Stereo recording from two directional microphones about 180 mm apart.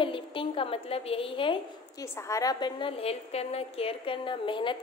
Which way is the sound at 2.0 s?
15° left (ahead or behind).